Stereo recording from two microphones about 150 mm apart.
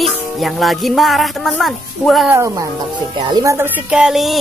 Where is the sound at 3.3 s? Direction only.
20° right (ahead or behind); by 4.3 s 5° right (ahead or behind).